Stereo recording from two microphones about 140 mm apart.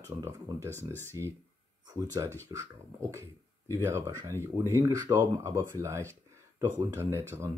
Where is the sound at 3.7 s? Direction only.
20° right (ahead or behind).